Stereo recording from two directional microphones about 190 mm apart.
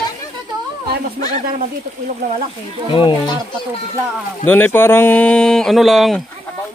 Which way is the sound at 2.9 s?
25° left (ahead or behind).